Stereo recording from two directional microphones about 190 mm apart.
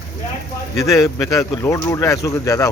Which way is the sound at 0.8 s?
15° left (ahead or behind).